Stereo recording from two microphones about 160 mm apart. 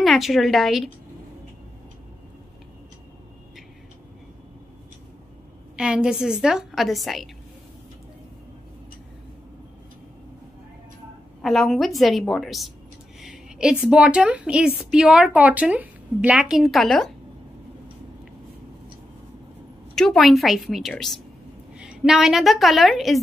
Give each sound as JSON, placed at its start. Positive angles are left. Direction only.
{"t": 0.0, "sound": "a woman's voice", "side_deg": 0}
{"t": 5.8, "sound": "a woman's voice", "side_deg": -5}
{"t": 11.4, "sound": "a woman's voice", "side_deg": 0}
{"t": 20.0, "sound": "a woman's voice", "side_deg": 0}